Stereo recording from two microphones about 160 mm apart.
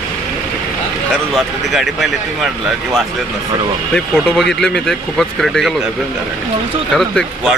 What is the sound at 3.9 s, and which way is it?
Speech, centre (ahead or behind).